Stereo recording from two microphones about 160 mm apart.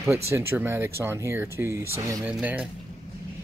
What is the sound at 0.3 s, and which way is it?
Speech, 15° right (ahead or behind).